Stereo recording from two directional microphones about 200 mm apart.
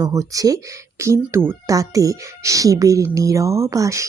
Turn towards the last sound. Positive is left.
turn(degrees=-15)  # may be behind; listen again after turning